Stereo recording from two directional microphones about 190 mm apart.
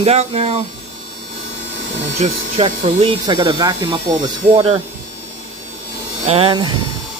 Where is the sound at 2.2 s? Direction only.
35° right (ahead or behind).